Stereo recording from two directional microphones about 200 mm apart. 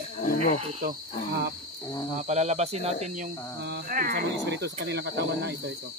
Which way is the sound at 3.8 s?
45° right (ahead or behind).